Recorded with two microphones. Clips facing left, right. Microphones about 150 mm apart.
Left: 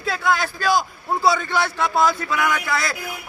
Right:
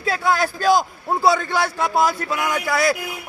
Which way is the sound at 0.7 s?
20° right (ahead or behind).